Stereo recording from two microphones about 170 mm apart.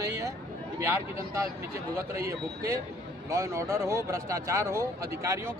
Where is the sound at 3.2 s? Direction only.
20° right (ahead or behind).